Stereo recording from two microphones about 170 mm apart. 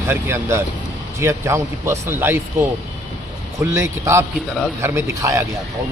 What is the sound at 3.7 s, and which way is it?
Speech, 15° right (ahead or behind).